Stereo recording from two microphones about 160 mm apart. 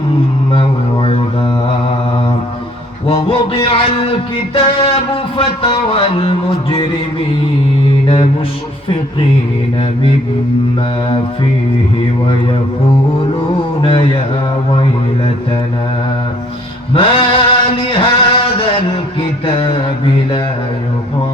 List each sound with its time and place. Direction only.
3.1 s music: 35° left (ahead or behind)
8.0 s mantra: 35° left (ahead or behind)
13.8 s mantra: 35° left (ahead or behind)
16.9 s chant: 35° left (ahead or behind)
19.5 s mantra: 30° left (ahead or behind)